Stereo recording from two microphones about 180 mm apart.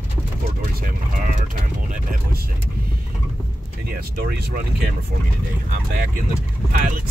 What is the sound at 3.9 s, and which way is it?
Speech, 55° right (ahead or behind).